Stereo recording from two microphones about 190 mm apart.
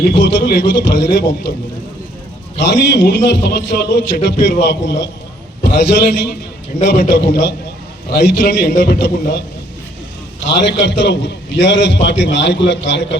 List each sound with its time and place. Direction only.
0.1 s a man's voice: 65° left (ahead or behind)
2.6 s a man's voice: 65° left (ahead or behind)
10.6 s a man's voice: 70° left (ahead or behind)